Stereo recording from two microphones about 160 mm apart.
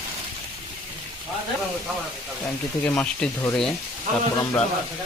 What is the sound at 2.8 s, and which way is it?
Speech, 10° left (ahead or behind).